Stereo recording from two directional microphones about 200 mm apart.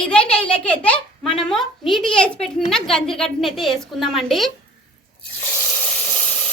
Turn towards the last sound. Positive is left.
turn(degrees=5)  # may be behind; listen again after turning